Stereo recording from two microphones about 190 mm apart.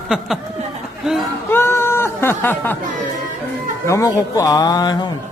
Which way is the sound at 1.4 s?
10° left (ahead or behind).